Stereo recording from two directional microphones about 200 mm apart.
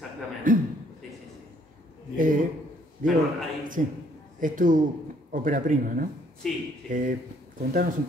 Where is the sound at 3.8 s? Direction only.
40° right (ahead or behind).